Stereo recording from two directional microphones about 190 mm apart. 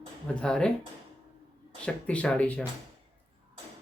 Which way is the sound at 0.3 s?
5° left (ahead or behind).